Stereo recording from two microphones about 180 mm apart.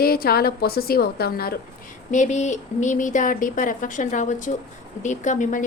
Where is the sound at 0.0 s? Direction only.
55° left (ahead or behind).